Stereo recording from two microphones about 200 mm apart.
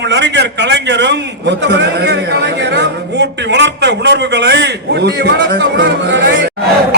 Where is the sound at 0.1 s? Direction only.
60° right (ahead or behind).